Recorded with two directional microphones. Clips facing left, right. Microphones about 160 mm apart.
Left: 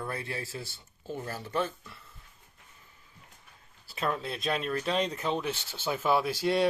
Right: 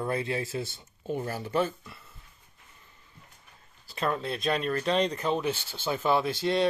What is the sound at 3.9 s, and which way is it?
Speech, centre (ahead or behind).